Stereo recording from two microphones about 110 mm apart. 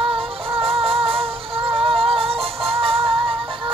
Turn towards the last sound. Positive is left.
turn(degrees=-55)  # may be behind; listen again after turning